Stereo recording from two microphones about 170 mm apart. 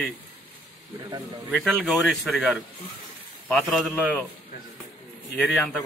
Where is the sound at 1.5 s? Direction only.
Centre (ahead or behind).